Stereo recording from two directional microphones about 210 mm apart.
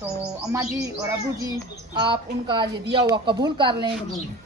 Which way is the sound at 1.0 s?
15° right (ahead or behind).